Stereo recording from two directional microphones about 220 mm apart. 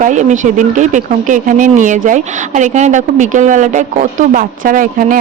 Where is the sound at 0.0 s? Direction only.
35° right (ahead or behind).